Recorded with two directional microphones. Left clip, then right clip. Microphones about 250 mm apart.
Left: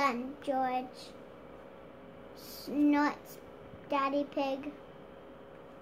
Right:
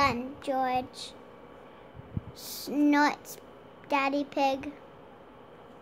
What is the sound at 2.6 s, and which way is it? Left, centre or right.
Child singing, right.